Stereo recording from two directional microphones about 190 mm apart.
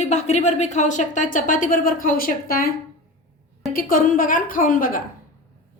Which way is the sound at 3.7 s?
50° left (ahead or behind).